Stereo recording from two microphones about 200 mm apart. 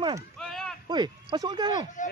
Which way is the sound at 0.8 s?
20° right (ahead or behind).